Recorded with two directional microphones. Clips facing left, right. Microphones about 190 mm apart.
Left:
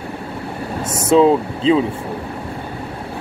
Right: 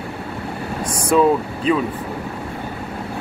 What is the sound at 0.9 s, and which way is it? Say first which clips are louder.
Speech: left 3 dB; 25° left (ahead or behind).